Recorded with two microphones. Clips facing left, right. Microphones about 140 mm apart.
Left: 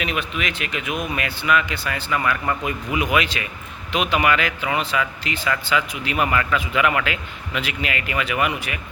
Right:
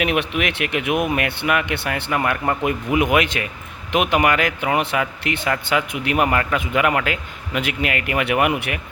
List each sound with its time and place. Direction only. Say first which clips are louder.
0.0 s speech: right 5 dB; 65° right (ahead or behind)